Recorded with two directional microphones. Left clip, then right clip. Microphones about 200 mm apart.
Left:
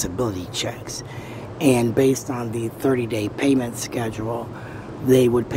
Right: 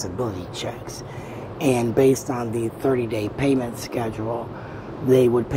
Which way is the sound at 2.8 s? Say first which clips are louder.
Left 2 dB; 30° left (ahead or behind).